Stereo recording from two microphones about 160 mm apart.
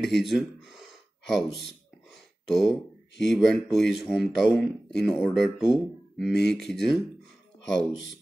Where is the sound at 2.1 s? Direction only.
Centre (ahead or behind).